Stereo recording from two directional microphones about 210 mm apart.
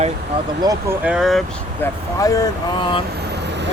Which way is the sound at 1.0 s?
5° right (ahead or behind).